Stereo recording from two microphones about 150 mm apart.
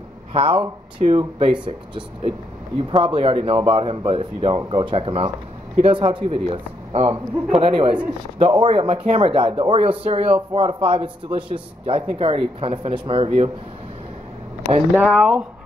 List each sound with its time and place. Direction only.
0.3 s speech: 35° right (ahead or behind)
15.0 s speech: 5° right (ahead or behind)